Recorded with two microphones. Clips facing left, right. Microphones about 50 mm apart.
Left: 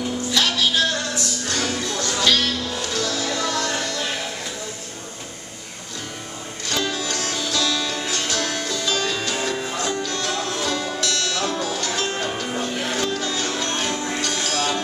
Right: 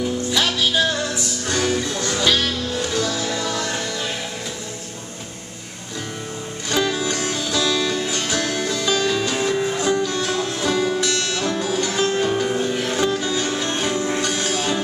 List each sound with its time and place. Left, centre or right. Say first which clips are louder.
0.3 s music: left 1 dB; centre
6.7 s music: right 4 dB; centre
11.0 s music: right 2 dB; centre